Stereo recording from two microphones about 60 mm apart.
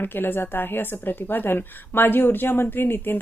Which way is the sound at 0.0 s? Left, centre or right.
Left.